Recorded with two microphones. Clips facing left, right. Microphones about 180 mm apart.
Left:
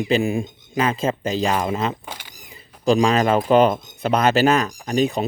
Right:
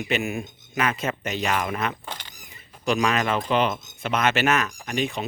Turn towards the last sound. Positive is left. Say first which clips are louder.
# left 7 dB
turn(degrees=35)  # may be behind; listen again after turning